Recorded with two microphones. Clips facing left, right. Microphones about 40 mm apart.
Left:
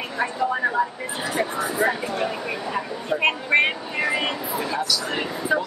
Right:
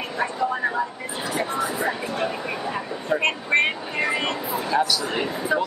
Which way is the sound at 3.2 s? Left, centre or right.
Centre.